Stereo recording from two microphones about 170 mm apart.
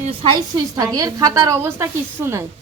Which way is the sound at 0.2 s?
30° right (ahead or behind).